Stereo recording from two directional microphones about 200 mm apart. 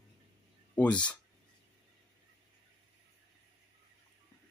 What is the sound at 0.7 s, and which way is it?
Speech, 5° left (ahead or behind).